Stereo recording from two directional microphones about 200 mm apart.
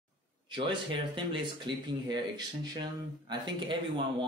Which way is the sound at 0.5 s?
25° right (ahead or behind).